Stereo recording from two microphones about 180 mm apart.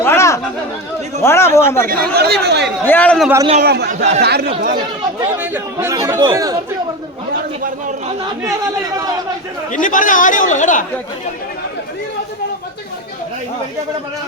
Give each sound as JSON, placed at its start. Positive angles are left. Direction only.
{"t": 0.0, "sound": "chatter", "side_deg": 15}
{"t": 1.2, "sound": "a man's voice", "side_deg": 15}
{"t": 1.9, "sound": "speech", "side_deg": -60}
{"t": 2.8, "sound": "a man's voice", "side_deg": 10}
{"t": 3.6, "sound": "speech", "side_deg": -65}
{"t": 5.4, "sound": "speech", "side_deg": -15}
{"t": 9.7, "sound": "speech", "side_deg": 45}